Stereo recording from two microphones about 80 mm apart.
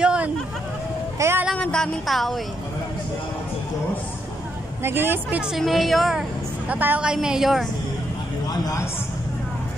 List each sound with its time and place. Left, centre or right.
0.0 s hubbub: centre
1.2 s speech: right
1.6 s a woman's voice: centre
4.8 s speech: right
5.6 s a woman's voice: centre
6.7 s speech: right
7.0 s a woman's voice: centre